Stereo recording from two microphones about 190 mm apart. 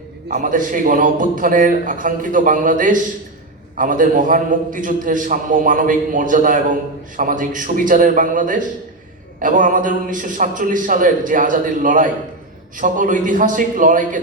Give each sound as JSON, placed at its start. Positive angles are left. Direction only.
{"t": 0.3, "sound": "a man's voice", "side_deg": -40}